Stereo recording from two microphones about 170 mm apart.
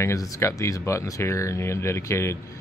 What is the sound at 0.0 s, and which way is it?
Speech, 20° left (ahead or behind).